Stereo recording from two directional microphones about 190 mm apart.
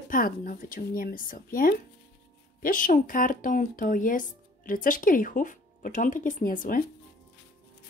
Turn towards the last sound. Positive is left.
turn(degrees=45)  # may be behind; listen again after turning